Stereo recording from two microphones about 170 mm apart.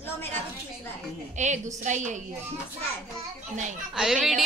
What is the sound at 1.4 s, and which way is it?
Speech, 45° right (ahead or behind).